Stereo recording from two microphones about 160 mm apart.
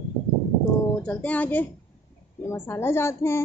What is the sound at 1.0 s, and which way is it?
A woman's voice, 10° left (ahead or behind).